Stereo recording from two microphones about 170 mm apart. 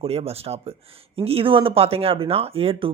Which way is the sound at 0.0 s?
35° right (ahead or behind).